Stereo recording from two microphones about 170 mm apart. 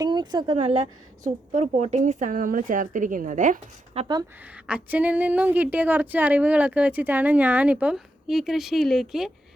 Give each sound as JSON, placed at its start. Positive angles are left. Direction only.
{"t": 0.0, "sound": "a woman's voice", "side_deg": -25}
{"t": 4.4, "sound": "a woman's voice", "side_deg": -10}